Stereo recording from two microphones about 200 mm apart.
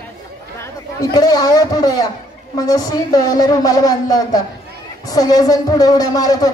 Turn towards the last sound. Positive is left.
turn(degrees=20)  # may be behind; listen again after turning